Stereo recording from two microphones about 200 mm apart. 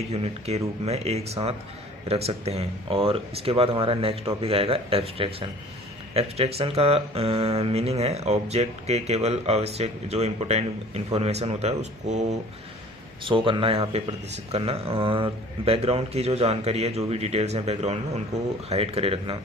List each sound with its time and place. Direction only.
0.1 s speech: 30° right (ahead or behind)